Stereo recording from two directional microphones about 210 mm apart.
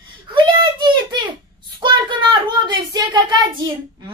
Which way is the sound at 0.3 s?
20° right (ahead or behind).